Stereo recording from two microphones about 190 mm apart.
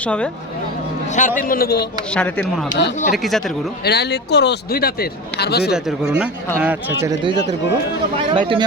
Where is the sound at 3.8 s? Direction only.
60° left (ahead or behind).